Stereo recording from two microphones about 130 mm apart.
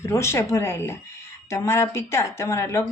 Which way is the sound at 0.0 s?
20° left (ahead or behind).